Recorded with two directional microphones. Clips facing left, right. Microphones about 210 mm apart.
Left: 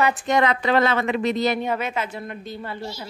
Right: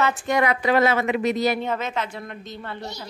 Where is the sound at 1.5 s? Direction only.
10° left (ahead or behind).